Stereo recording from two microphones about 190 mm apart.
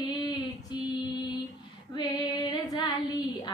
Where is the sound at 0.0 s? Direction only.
20° left (ahead or behind).